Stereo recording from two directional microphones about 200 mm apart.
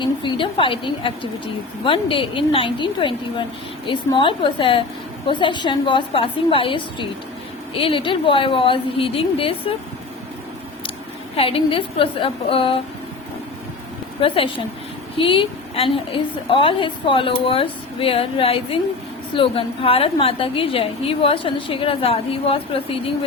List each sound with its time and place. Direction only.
0.0 s a woman's voice: 25° left (ahead or behind)
11.3 s a woman's voice: 30° left (ahead or behind)
14.2 s a woman's voice: 25° left (ahead or behind)